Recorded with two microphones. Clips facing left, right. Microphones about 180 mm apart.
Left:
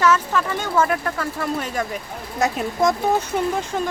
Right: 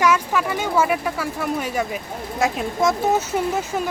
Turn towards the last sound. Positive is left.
turn(degrees=-5)  # may be behind; listen again after turning